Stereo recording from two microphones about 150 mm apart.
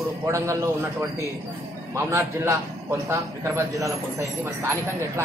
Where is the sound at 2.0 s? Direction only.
20° right (ahead or behind).